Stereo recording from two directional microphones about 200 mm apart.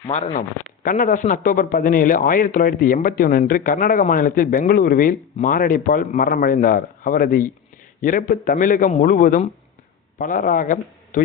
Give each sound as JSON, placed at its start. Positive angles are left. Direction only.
{"t": 0.1, "sound": "a man's voice", "side_deg": 35}